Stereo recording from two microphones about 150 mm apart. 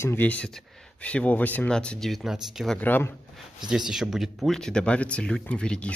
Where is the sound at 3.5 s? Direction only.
5° right (ahead or behind).